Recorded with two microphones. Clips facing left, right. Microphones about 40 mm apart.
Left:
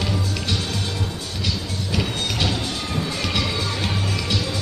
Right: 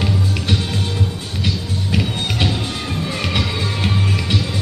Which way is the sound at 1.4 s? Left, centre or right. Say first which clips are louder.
Right 4 dB; right.